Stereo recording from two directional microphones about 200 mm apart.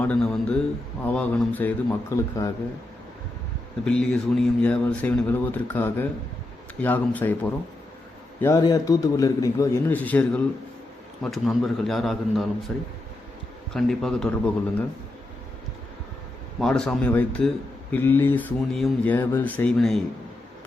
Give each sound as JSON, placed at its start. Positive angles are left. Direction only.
{"t": 0.0, "sound": "a man's voice", "side_deg": 5}
{"t": 3.8, "sound": "a man's voice", "side_deg": 5}
{"t": 13.7, "sound": "a man's voice", "side_deg": 0}
{"t": 16.6, "sound": "a man's voice", "side_deg": 5}